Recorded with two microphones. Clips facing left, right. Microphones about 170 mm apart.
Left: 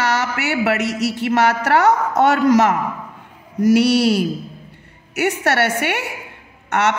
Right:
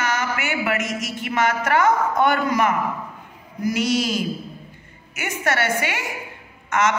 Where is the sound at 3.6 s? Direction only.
70° left (ahead or behind).